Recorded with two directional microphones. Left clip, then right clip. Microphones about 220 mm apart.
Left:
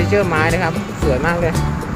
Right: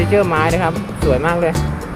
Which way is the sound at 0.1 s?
15° right (ahead or behind).